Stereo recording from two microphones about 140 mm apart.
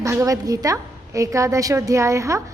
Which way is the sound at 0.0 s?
20° right (ahead or behind).